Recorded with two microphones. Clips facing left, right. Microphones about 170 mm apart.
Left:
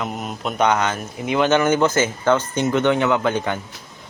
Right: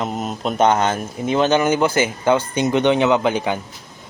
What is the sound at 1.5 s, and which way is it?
Speech, 15° right (ahead or behind).